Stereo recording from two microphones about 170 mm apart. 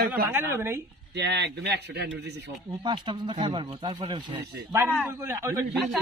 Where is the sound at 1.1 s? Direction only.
85° right.